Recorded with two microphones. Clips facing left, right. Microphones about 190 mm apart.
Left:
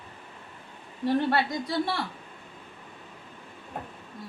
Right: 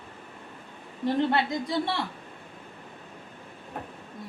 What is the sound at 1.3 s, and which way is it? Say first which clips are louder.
Speech: right 1 dB; 20° right (ahead or behind).